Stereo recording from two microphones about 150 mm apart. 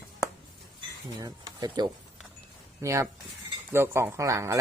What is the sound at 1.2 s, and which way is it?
Speech, 25° right (ahead or behind).